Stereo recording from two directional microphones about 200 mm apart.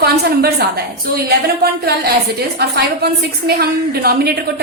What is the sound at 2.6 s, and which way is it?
A woman's voice, 55° right (ahead or behind).